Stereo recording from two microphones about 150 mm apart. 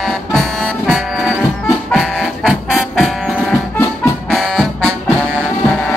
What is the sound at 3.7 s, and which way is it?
Music, 15° left (ahead or behind).